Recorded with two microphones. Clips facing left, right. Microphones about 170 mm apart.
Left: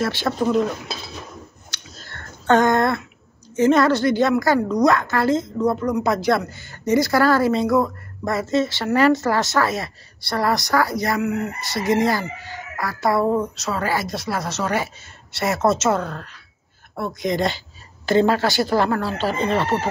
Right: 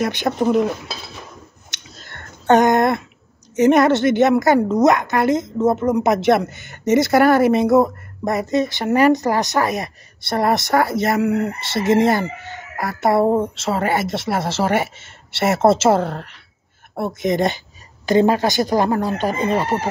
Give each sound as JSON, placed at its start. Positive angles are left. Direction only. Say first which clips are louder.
{"t": 0.0, "sound": "a woman's voice", "louder": "right 2 dB", "side_deg": -20}
{"t": 1.7, "sound": "a sound", "louder": "even", "side_deg": -20}
{"t": 3.5, "sound": "a woman's voice", "louder": "right 3 dB", "side_deg": -20}